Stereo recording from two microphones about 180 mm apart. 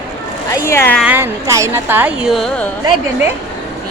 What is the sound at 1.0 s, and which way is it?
A woman's voice, 10° right (ahead or behind).